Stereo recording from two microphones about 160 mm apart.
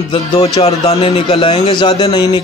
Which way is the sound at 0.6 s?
40° left (ahead or behind).